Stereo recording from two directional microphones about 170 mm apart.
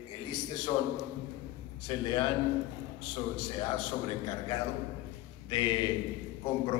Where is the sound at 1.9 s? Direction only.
25° left (ahead or behind).